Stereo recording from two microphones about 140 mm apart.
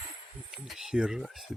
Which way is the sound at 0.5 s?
Centre (ahead or behind).